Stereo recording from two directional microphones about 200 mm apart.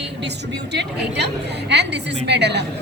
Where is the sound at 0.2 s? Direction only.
55° right (ahead or behind).